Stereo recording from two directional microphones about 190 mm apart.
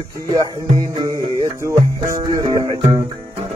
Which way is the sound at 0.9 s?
20° right (ahead or behind).